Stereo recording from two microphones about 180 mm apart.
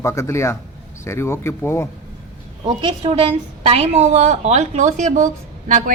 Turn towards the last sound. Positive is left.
turn(degrees=-45)  # may be behind; listen again after turning